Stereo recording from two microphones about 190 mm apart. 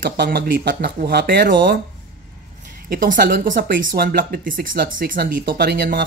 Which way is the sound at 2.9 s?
50° right (ahead or behind).